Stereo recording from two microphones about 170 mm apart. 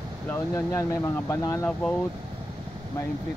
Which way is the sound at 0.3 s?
15° left (ahead or behind).